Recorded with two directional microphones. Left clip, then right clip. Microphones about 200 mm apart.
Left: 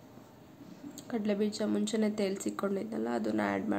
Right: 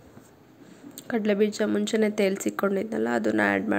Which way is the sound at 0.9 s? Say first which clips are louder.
Right 9 dB; 15° right (ahead or behind).